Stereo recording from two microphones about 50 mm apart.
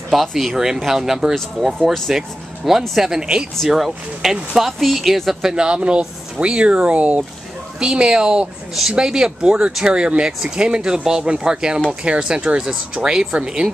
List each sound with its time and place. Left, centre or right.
0.1 s speech: centre
3.5 s speech: centre; by 7.2 s right
7.8 s speech: centre